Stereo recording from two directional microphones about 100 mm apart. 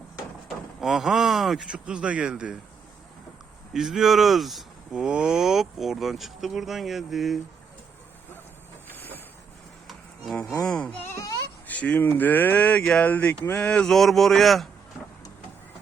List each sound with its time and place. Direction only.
0.4 s speech: 5° right (ahead or behind)
3.7 s speech: 5° right (ahead or behind)
8.9 s a sound: 20° left (ahead or behind)
10.3 s speech: 10° left (ahead or behind)